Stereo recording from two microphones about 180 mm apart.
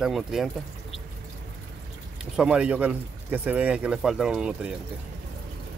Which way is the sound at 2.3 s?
5° right (ahead or behind).